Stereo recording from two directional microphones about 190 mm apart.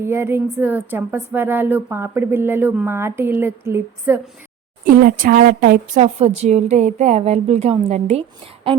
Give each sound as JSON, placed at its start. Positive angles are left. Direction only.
{"t": 0.0, "sound": "speech", "side_deg": -10}
{"t": 5.0, "sound": "a woman's voice", "side_deg": -50}